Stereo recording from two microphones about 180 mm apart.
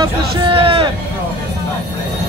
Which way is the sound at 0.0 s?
30° right (ahead or behind).